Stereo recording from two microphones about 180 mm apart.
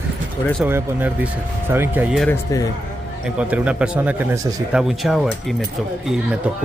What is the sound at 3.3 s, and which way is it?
Speech, 5° right (ahead or behind).